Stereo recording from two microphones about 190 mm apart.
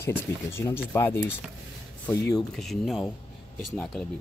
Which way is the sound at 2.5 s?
Centre (ahead or behind).